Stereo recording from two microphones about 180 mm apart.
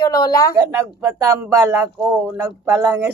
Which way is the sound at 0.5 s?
15° right (ahead or behind).